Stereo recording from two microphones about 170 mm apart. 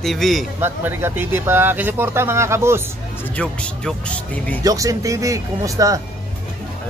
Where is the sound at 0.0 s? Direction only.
Centre (ahead or behind).